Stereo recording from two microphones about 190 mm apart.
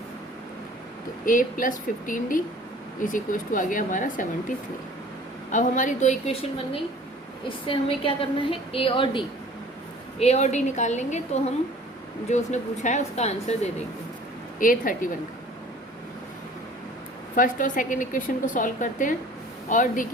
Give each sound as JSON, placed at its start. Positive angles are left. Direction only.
{"t": 1.2, "sound": "a woman's voice", "side_deg": 45}
{"t": 7.7, "sound": "a woman's voice", "side_deg": 30}
{"t": 12.3, "sound": "a woman's voice", "side_deg": 40}
{"t": 17.3, "sound": "a woman's voice", "side_deg": 45}